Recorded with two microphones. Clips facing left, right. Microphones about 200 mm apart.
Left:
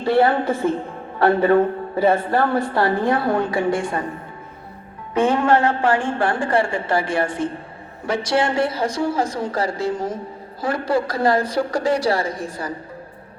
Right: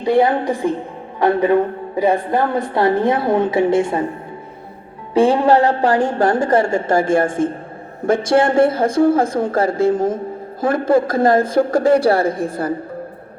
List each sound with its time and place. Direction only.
0.0 s a woman's voice: 15° right (ahead or behind)
5.1 s a woman's voice: 30° right (ahead or behind); by 12.7 s 55° right (ahead or behind)